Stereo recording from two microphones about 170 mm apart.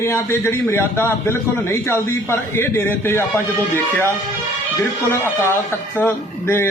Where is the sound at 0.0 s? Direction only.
15° left (ahead or behind).